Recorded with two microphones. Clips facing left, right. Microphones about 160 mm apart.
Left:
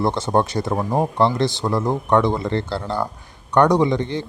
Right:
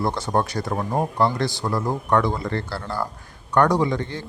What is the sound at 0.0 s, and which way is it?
Speech, 25° left (ahead or behind).